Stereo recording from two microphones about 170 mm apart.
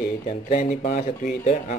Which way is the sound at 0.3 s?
45° left (ahead or behind).